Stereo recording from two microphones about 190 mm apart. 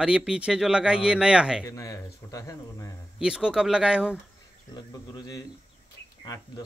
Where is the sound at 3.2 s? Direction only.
5° right (ahead or behind).